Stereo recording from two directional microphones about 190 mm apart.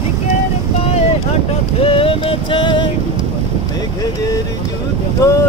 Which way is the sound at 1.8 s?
30° left (ahead or behind).